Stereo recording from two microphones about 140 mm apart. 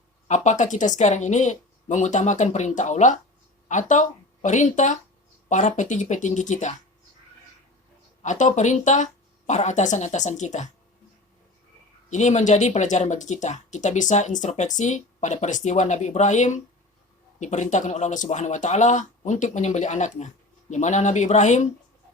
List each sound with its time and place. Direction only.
0.3 s speech: 60° left (ahead or behind)
8.2 s speech: 60° left (ahead or behind)
12.1 s speech: 55° left (ahead or behind)